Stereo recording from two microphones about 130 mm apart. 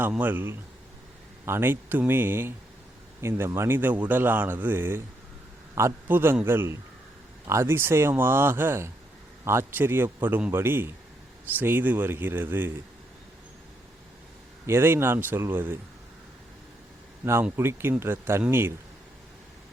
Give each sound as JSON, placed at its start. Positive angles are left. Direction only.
{"t": 0.1, "sound": "a man's voice", "side_deg": -15}
{"t": 14.7, "sound": "a man's voice", "side_deg": -20}
{"t": 17.4, "sound": "a man's voice", "side_deg": -20}